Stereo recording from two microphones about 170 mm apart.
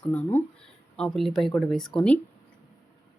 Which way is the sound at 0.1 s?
10° left (ahead or behind).